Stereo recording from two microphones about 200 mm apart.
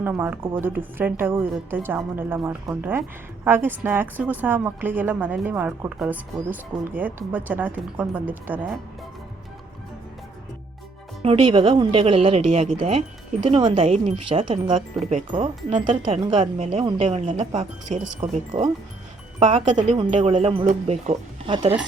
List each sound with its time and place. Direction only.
0.0 s a woman's voice: 10° right (ahead or behind)
11.2 s speech: 25° right (ahead or behind)
19.5 s speech: 30° right (ahead or behind)